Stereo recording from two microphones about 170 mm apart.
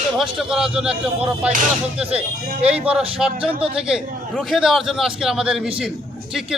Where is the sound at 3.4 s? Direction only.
35° right (ahead or behind).